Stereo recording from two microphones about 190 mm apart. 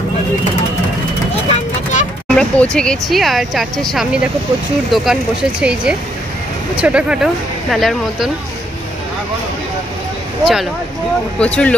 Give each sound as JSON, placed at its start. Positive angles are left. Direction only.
{"t": 1.5, "sound": "vehicle", "side_deg": 40}
{"t": 2.2, "sound": "speech", "side_deg": 5}
{"t": 10.4, "sound": "speech", "side_deg": 0}